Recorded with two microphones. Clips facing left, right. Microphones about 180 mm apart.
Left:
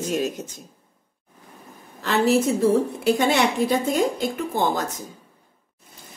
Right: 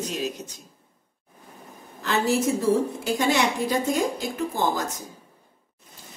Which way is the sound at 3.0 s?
65° left (ahead or behind).